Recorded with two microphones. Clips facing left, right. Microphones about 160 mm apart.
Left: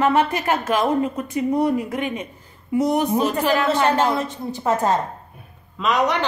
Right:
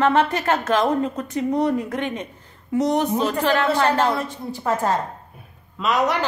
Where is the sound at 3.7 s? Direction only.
20° left (ahead or behind).